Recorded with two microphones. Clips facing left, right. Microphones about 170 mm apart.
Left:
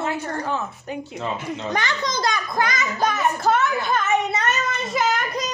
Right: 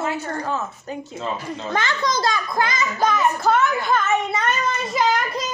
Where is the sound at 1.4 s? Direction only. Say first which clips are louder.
Even; 20° left (ahead or behind).